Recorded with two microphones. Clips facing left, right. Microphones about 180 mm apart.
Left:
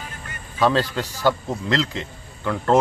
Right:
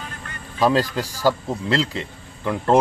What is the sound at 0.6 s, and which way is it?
A man's voice, 10° right (ahead or behind).